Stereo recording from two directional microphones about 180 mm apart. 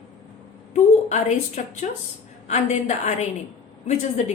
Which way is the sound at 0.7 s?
40° left (ahead or behind).